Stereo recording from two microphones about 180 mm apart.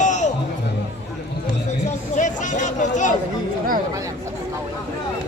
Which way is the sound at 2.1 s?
45° left (ahead or behind).